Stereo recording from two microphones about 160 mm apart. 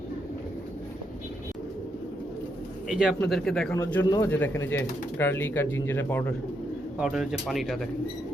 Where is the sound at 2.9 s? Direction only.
Centre (ahead or behind).